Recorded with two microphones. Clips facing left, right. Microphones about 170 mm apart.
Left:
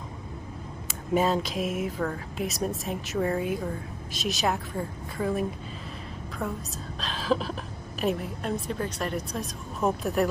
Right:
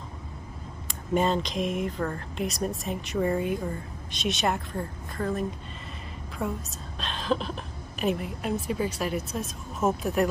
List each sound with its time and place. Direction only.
0.8 s speech: 5° left (ahead or behind)
6.4 s speech: centre (ahead or behind)